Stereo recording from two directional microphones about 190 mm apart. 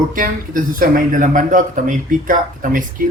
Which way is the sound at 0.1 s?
45° right (ahead or behind).